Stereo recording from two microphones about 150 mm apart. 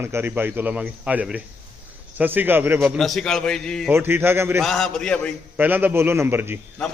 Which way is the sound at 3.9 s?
15° right (ahead or behind).